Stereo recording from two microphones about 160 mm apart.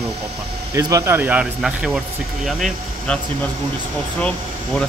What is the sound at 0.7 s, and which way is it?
Speech, 20° right (ahead or behind).